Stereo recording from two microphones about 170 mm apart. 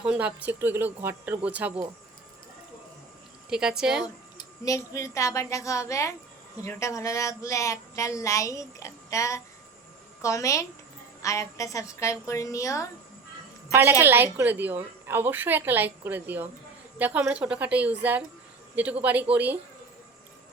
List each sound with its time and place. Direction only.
0.0 s a woman's voice: 5° right (ahead or behind)
3.5 s a woman's voice: 5° right (ahead or behind)
4.0 s a sound: 20° left (ahead or behind)
4.9 s a woman's voice: 20° left (ahead or behind)
14.0 s a woman's voice: 10° right (ahead or behind)